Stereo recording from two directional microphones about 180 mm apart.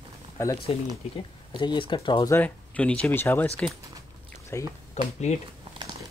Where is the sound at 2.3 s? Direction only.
10° left (ahead or behind).